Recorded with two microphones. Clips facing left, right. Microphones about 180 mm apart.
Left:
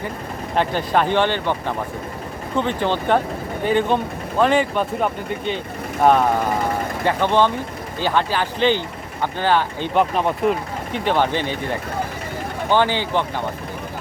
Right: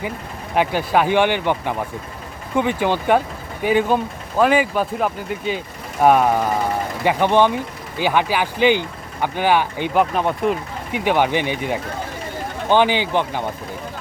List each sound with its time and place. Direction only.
0.5 s speech: 10° right (ahead or behind)
9.9 s speech: centre (ahead or behind)
10.9 s speech: 10° right (ahead or behind)